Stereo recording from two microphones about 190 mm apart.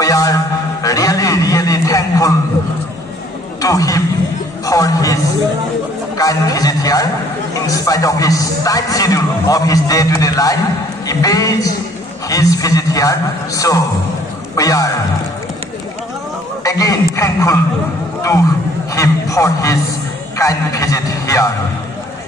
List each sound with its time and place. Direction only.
0.0 s a sound: 20° left (ahead or behind)
3.6 s a man's voice: 20° left (ahead or behind)
16.6 s a man's voice: 20° left (ahead or behind)
18.9 s a man's voice: 15° left (ahead or behind)